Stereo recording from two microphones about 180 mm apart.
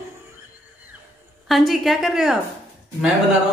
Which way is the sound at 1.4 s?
Centre (ahead or behind).